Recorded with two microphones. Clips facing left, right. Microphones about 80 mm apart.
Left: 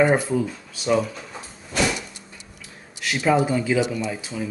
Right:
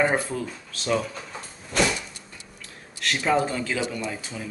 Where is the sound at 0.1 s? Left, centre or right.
Centre.